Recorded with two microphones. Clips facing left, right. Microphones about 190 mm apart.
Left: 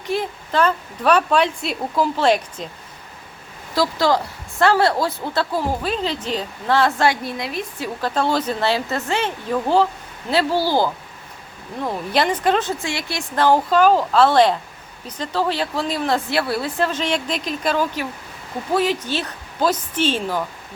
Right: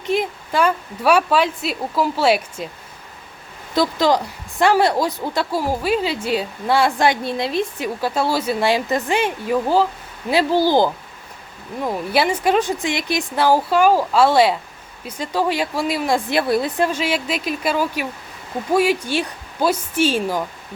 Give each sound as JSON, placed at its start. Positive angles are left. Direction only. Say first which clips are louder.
{"t": 0.1, "sound": "a woman's voice", "louder": "right 2 dB", "side_deg": -15}
{"t": 3.8, "sound": "a woman's voice", "louder": "right 1 dB", "side_deg": -20}
{"t": 7.3, "sound": "a woman's voice", "louder": "right 5 dB", "side_deg": -30}
{"t": 7.8, "sound": "a woman's voice", "louder": "right 1 dB", "side_deg": -10}
{"t": 12.1, "sound": "a woman's voice", "louder": "right 1 dB", "side_deg": -10}